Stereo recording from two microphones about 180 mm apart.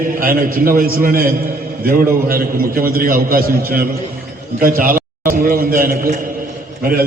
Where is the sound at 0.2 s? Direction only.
50° right (ahead or behind).